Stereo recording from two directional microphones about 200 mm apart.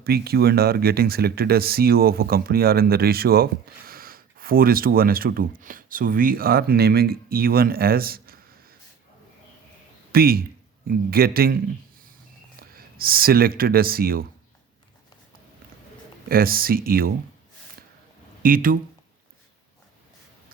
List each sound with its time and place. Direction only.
0.0 s speech: 50° right (ahead or behind)
10.1 s speech: 50° right (ahead or behind)
12.7 s speech: 50° right (ahead or behind)
16.3 s speech: 45° right (ahead or behind)
18.4 s speech: 45° right (ahead or behind)